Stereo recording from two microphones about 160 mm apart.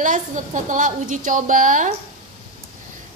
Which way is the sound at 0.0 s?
55° right (ahead or behind).